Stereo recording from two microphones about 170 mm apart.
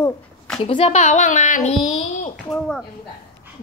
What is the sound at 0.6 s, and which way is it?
A child's voice, 35° left (ahead or behind).